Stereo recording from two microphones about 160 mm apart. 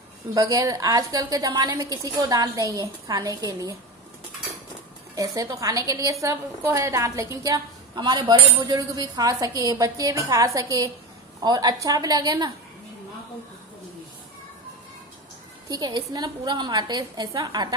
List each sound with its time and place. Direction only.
0.3 s a woman's voice: 20° right (ahead or behind)
5.1 s a woman's voice: 20° right (ahead or behind)
15.7 s a woman's voice: 25° right (ahead or behind)